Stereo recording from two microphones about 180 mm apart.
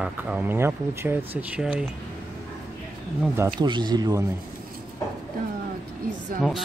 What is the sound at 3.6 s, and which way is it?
Speech, 25° right (ahead or behind).